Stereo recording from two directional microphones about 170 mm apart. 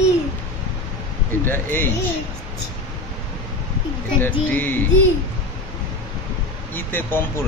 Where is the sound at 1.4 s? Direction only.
10° left (ahead or behind).